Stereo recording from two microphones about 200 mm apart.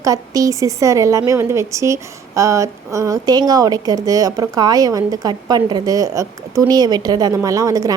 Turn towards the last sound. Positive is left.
turn(degrees=-15)  # may be behind; listen again after turning